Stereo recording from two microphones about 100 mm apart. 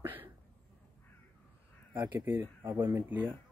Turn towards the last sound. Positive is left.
turn(degrees=-20)  # may be behind; listen again after turning